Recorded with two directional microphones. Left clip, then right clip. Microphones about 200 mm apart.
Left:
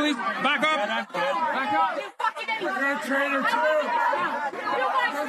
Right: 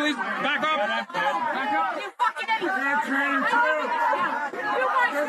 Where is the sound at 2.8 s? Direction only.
30° left (ahead or behind).